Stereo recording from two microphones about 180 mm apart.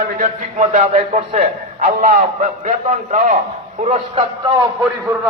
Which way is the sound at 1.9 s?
50° right (ahead or behind).